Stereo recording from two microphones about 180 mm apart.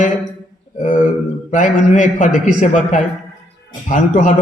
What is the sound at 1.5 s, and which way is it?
A man's voice, 40° left (ahead or behind).